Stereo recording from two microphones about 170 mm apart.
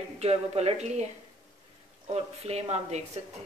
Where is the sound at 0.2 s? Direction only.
40° right (ahead or behind).